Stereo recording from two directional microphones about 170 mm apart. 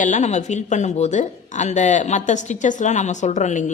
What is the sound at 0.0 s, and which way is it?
Speech, 45° left (ahead or behind).